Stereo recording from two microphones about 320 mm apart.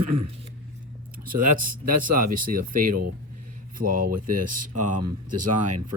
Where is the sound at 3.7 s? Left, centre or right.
Right.